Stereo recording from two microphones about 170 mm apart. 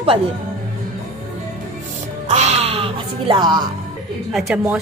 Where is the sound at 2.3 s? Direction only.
40° right (ahead or behind); by 3.7 s 25° right (ahead or behind).